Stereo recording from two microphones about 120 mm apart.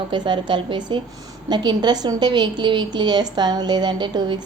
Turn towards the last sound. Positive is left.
turn(degrees=-40)  # may be behind; listen again after turning